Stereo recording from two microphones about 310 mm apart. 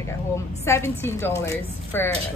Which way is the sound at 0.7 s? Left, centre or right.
Centre.